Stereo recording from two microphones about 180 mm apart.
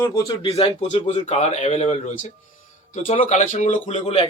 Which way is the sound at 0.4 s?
35° left (ahead or behind).